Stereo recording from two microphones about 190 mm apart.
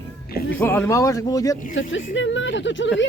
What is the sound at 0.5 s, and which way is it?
Speech, 10° left (ahead or behind).